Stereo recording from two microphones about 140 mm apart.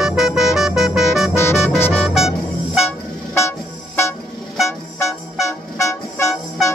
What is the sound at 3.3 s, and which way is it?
Music, 20° left (ahead or behind).